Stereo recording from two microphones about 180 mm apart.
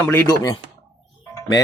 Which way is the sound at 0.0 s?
15° left (ahead or behind).